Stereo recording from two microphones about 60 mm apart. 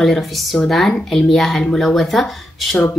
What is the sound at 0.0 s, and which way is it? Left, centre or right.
Speech, centre.